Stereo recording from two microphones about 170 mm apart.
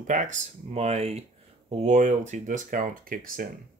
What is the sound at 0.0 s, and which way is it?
Speech, 45° right (ahead or behind).